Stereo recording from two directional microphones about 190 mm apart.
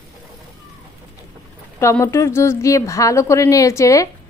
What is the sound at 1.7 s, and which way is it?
A woman's voice, 15° left (ahead or behind).